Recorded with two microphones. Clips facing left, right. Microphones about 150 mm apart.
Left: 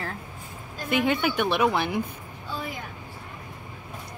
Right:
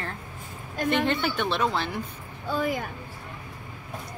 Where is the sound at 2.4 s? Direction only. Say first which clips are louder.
Right 7 dB; 50° right (ahead or behind).